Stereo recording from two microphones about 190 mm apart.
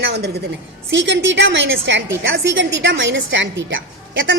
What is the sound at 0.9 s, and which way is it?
A woman's voice, 75° right (ahead or behind).